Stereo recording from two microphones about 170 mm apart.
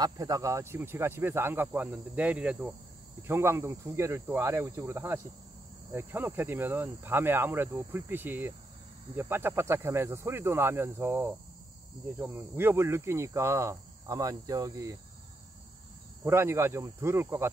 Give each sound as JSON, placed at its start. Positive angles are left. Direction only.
{"t": 0.0, "sound": "speech", "side_deg": -20}
{"t": 16.3, "sound": "speech", "side_deg": -15}